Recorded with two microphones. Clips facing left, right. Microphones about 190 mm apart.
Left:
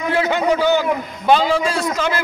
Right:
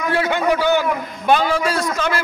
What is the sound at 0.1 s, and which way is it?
A man's voice, 20° left (ahead or behind).